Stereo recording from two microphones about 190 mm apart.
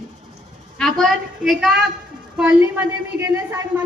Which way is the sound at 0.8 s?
Centre (ahead or behind).